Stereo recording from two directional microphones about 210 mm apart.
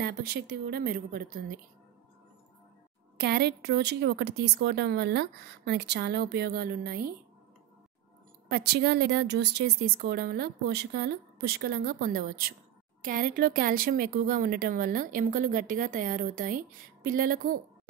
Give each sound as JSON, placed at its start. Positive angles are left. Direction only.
{"t": 0.0, "sound": "a woman's voice", "side_deg": -45}
{"t": 3.2, "sound": "a woman's voice", "side_deg": -50}
{"t": 8.5, "sound": "a woman's voice", "side_deg": -50}